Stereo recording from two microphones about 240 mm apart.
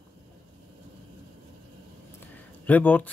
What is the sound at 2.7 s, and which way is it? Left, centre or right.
Speech, centre.